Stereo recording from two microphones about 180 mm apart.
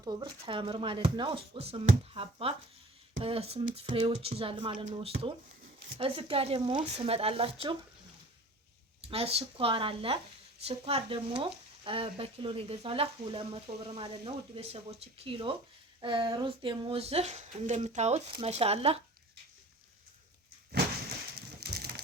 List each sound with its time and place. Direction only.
0.0 s speech: 25° right (ahead or behind)
6.0 s speech: 30° right (ahead or behind)
9.0 s speech: 35° right (ahead or behind)
21.6 s crushing: 60° right (ahead or behind)